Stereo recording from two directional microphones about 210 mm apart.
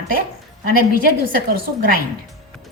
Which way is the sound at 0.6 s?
45° right (ahead or behind).